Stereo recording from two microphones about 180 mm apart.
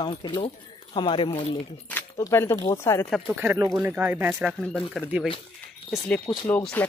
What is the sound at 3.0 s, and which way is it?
Speech, centre (ahead or behind).